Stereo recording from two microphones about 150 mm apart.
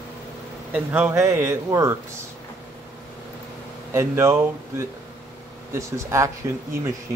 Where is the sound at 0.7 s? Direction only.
10° right (ahead or behind).